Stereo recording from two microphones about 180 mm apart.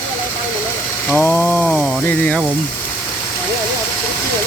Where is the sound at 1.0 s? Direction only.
10° left (ahead or behind).